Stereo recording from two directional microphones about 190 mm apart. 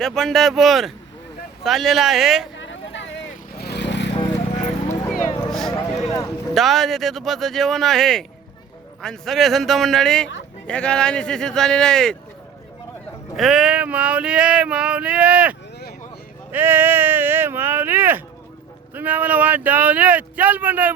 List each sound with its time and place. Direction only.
0.0 s male singing: centre (ahead or behind)
2.6 s vehicle: 75° left (ahead or behind)
3.6 s vehicle: 60° left (ahead or behind)
5.4 s a sound: centre (ahead or behind)
5.7 s a sound: 20° left (ahead or behind)
6.5 s male singing: centre (ahead or behind)
13.3 s male singing: centre (ahead or behind)
16.5 s a sound: 10° right (ahead or behind)
18.9 s speech: 10° right (ahead or behind)